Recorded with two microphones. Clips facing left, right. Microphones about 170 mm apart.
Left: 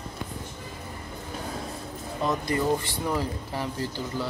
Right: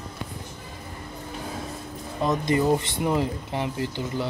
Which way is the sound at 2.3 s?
20° right (ahead or behind).